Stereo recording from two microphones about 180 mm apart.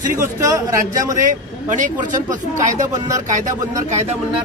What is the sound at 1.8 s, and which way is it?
Speech, 45° right (ahead or behind).